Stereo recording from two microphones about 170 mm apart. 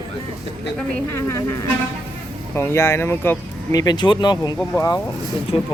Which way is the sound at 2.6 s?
15° left (ahead or behind).